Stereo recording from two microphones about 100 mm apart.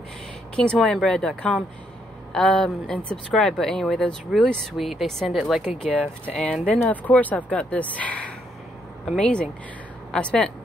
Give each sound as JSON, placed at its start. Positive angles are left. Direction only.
{"t": 0.6, "sound": "speech", "side_deg": 5}
{"t": 5.9, "sound": "speech", "side_deg": 10}